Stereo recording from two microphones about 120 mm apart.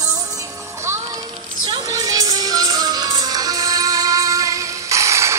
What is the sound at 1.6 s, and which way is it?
Music, 35° right (ahead or behind).